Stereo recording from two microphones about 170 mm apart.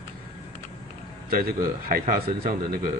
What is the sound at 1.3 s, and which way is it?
A man's voice, 60° right (ahead or behind).